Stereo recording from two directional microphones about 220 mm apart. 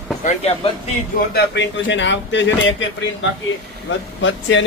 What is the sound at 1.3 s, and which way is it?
A man's voice, 50° left (ahead or behind).